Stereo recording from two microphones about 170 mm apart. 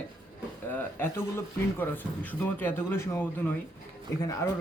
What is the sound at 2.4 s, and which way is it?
Speech, 10° left (ahead or behind).